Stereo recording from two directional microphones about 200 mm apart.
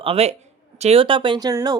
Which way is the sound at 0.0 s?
30° right (ahead or behind).